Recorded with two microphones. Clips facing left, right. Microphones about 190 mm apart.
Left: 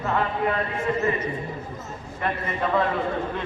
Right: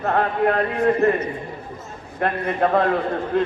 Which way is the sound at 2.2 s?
55° right (ahead or behind).